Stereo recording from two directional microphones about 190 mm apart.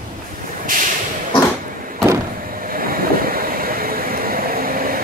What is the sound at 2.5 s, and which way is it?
Vehicle, 50° right (ahead or behind).